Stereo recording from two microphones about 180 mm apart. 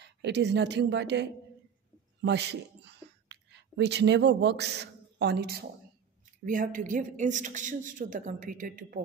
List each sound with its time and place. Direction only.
0.0 s a woman's voice: 70° right (ahead or behind)
3.3 s a man's voice: 75° right (ahead or behind)
6.4 s a man's voice: 50° right (ahead or behind)